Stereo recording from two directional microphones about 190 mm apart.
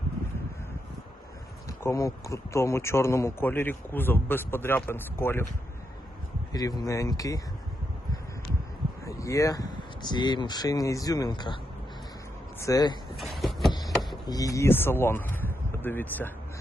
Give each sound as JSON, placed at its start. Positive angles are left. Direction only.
{"t": 1.6, "sound": "speech", "side_deg": 15}
{"t": 6.5, "sound": "speech", "side_deg": 20}
{"t": 9.0, "sound": "speech", "side_deg": 15}
{"t": 13.4, "sound": "a sound", "side_deg": 0}
{"t": 14.3, "sound": "speech", "side_deg": 20}